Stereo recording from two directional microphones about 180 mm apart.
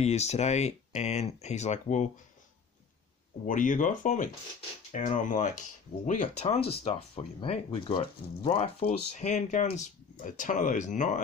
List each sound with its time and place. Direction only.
0.0 s speech: 35° left (ahead or behind)
3.4 s speech: 45° left (ahead or behind)